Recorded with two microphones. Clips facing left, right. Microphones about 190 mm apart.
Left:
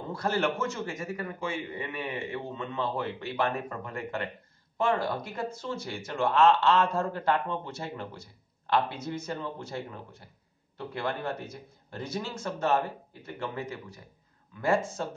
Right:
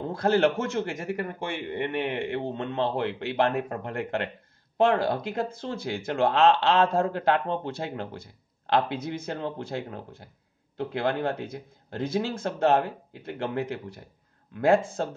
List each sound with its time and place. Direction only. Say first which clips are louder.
0.2 s a man's voice: right 6 dB; 60° right (ahead or behind)